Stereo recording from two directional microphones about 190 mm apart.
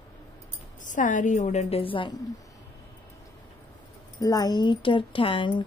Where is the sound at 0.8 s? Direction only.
40° left (ahead or behind); by 2.4 s 25° left (ahead or behind).